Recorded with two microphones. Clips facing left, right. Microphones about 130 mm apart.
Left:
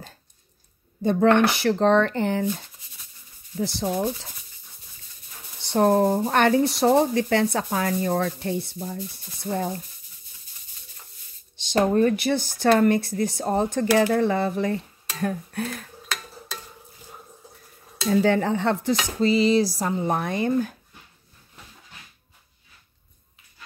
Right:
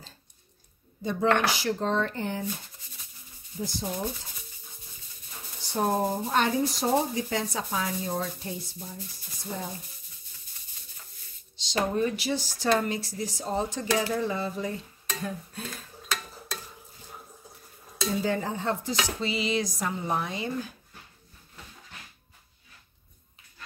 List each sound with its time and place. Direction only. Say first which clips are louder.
1.0 s speech: left 7 dB; 60° left (ahead or behind); by 2.4 s 80° left
3.5 s speech: left 7 dB; 75° left (ahead or behind)
5.6 s speech: left 8 dB; 70° left (ahead or behind)
11.5 s speech: left 7 dB; 55° left (ahead or behind)
18.1 s speech: left 9 dB; 75° left (ahead or behind)
19.0 s dishes: left 14 dB; 40° left (ahead or behind)
20.1 s speech: left 8 dB; 55° left (ahead or behind)